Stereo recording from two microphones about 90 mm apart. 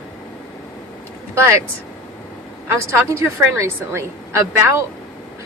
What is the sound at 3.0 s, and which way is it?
A woman's voice, 30° right (ahead or behind).